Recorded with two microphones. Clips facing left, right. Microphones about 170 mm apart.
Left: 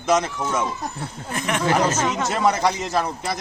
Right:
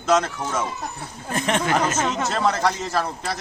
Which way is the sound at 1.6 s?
30° left (ahead or behind).